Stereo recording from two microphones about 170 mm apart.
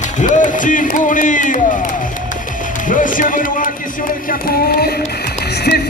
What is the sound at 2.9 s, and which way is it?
Speech, 50° left (ahead or behind).